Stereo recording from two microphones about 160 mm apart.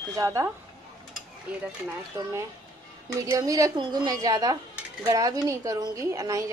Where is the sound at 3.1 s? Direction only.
20° right (ahead or behind).